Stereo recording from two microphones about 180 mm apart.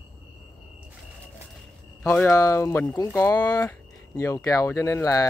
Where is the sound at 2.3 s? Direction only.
15° left (ahead or behind).